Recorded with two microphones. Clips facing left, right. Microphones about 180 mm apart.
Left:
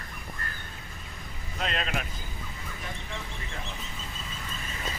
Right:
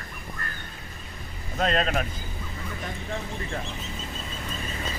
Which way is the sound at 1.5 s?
40° right (ahead or behind).